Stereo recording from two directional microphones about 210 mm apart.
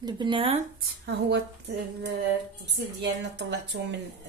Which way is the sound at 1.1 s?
55° right (ahead or behind).